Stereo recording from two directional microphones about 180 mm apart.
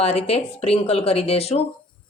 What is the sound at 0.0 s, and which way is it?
A woman's voice, 35° left (ahead or behind).